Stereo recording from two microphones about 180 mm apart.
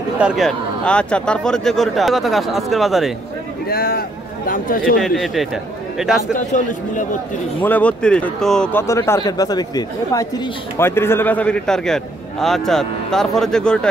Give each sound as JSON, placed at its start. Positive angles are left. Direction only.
{"t": 0.2, "sound": "speech", "side_deg": 0}
{"t": 3.6, "sound": "speech", "side_deg": 55}
{"t": 5.0, "sound": "speech", "side_deg": 0}
{"t": 6.3, "sound": "speech", "side_deg": 45}
{"t": 7.6, "sound": "speech", "side_deg": 10}
{"t": 8.8, "sound": "speech", "side_deg": 15}